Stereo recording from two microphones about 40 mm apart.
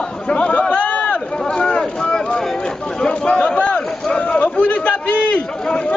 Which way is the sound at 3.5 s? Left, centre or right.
Left.